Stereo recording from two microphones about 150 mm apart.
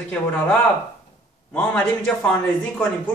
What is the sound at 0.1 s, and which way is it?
Speech, 10° left (ahead or behind).